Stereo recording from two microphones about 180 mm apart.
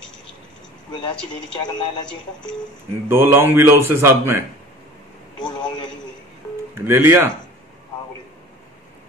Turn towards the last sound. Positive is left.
turn(degrees=-15)  # may be behind; listen again after turning